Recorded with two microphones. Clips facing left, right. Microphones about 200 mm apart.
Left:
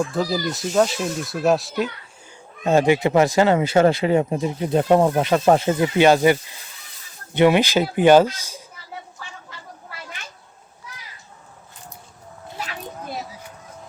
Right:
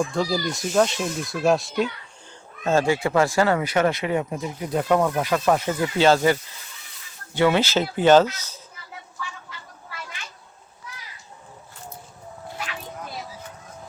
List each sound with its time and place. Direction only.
0.0 s speech: centre (ahead or behind)
2.6 s speech: 20° left (ahead or behind)